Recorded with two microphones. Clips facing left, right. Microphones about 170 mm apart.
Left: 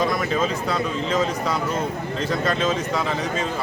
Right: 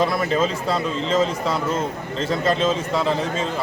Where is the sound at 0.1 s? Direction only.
5° right (ahead or behind).